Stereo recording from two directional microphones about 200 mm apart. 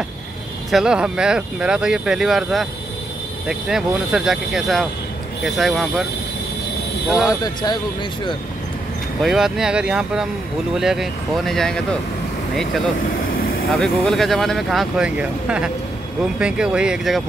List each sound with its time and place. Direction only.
0.7 s speech: centre (ahead or behind)
7.2 s speech: 20° left (ahead or behind)
9.2 s speech: centre (ahead or behind)
13.7 s speech: centre (ahead or behind)